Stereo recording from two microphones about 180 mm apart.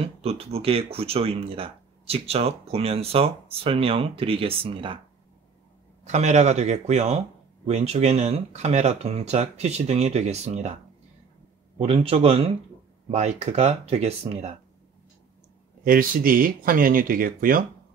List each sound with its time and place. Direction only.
0.0 s speech: 35° right (ahead or behind)
6.0 s speech: 40° right (ahead or behind)
11.8 s speech: 35° right (ahead or behind)
15.8 s speech: 50° right (ahead or behind)